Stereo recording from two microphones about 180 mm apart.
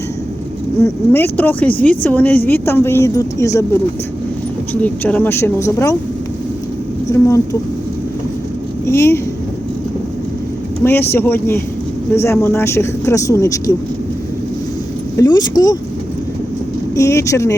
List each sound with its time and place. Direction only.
0.8 s speech: 10° left (ahead or behind)
4.8 s speech: 10° left (ahead or behind)
7.1 s speech: 15° left (ahead or behind)
8.9 s speech: 15° left (ahead or behind)
10.8 s speech: 10° left (ahead or behind)
15.1 s speech: 20° left (ahead or behind)
16.9 s speech: 15° left (ahead or behind)